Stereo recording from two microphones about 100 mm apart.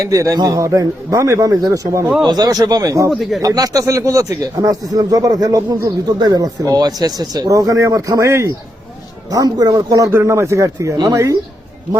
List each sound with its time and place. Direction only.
0.0 s speech: 35° right (ahead or behind)
3.1 s speech: centre (ahead or behind)
3.4 s speech: 40° right (ahead or behind)